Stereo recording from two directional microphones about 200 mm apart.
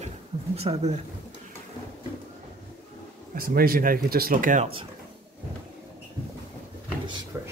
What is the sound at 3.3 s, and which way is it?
Speech, 45° right (ahead or behind).